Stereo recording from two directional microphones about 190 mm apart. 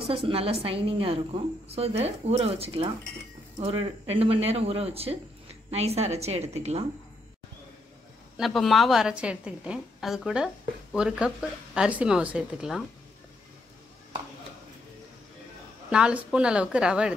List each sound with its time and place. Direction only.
0.0 s a woman's voice: 30° right (ahead or behind)
8.4 s a woman's voice: centre (ahead or behind)
15.9 s a woman's voice: 5° right (ahead or behind)